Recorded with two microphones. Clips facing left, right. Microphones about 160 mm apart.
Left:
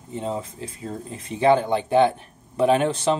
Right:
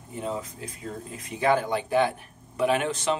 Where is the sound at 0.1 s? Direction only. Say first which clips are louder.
Left 3 dB; 30° left (ahead or behind).